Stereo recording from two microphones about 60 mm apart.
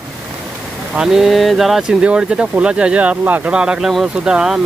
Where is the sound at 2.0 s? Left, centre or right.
Centre.